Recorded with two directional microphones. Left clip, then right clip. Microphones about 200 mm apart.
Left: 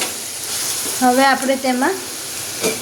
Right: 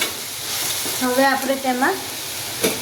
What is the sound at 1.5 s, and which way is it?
Speech, 45° left (ahead or behind).